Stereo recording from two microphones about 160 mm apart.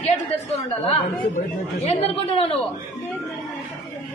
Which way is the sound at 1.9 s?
40° left (ahead or behind).